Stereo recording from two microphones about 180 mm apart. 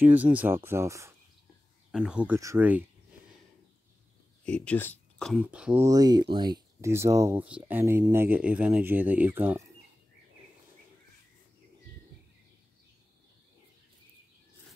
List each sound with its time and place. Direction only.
0.0 s speech: 10° right (ahead or behind)
1.9 s speech: 5° right (ahead or behind)
4.5 s speech: 5° left (ahead or behind)
5.3 s speech: 5° right (ahead or behind)
5.9 s speech: 20° right (ahead or behind)